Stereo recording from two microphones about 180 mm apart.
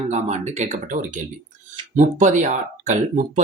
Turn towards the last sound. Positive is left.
turn(degrees=-45)  # may be behind; listen again after turning